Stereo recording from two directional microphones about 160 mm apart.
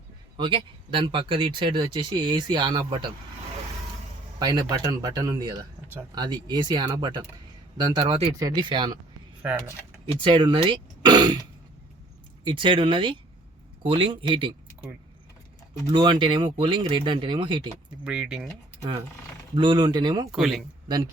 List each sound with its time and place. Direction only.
0.3 s speech: 30° right (ahead or behind)
4.4 s speech: 25° right (ahead or behind)
9.4 s speech: 10° right (ahead or behind)
10.2 s speech: 30° right (ahead or behind)
12.5 s speech: 30° right (ahead or behind)
15.9 s speech: 30° right (ahead or behind)
18.0 s speech: 5° right (ahead or behind)
18.8 s speech: 20° right (ahead or behind)
20.3 s speech: centre (ahead or behind)
20.8 s speech: 25° right (ahead or behind)